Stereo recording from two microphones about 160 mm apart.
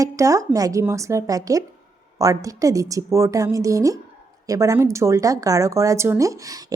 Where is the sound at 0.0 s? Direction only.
20° right (ahead or behind).